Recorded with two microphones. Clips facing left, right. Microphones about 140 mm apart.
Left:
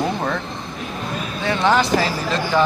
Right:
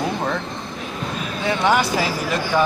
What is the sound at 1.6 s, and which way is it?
Speech, 15° right (ahead or behind).